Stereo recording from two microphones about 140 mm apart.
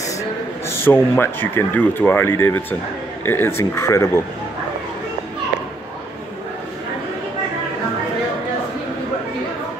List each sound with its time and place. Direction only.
0.7 s speech: 15° left (ahead or behind)